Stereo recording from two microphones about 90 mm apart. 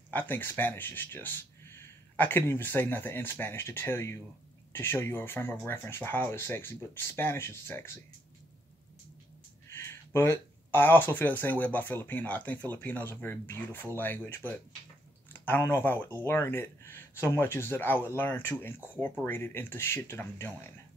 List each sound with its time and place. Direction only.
0.1 s speech: 20° left (ahead or behind)
9.8 s speech: 30° left (ahead or behind)